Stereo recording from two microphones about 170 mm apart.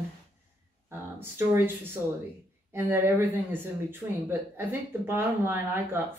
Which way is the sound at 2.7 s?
10° right (ahead or behind).